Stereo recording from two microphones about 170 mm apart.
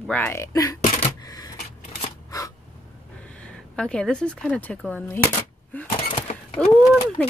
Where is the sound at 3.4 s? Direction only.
5° left (ahead or behind).